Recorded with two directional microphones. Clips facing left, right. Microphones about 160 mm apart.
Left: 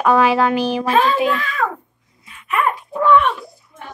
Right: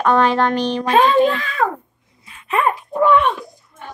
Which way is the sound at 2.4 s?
30° right (ahead or behind).